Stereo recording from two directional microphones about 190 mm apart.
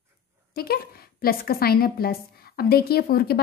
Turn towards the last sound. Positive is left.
turn(degrees=55)  # may be behind; listen again after turning